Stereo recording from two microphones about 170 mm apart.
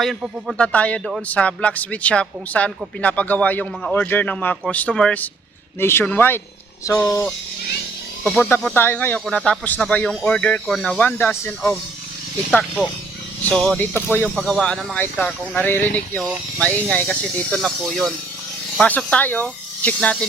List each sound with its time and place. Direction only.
0.0 s speech: centre (ahead or behind); by 7.3 s 15° left (ahead or behind)
8.2 s speech: 5° left (ahead or behind)